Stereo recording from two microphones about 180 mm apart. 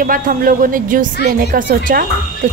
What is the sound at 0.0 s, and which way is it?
Speech, 50° right (ahead or behind).